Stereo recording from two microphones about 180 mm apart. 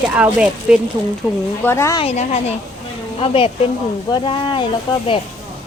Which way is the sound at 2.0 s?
35° left (ahead or behind).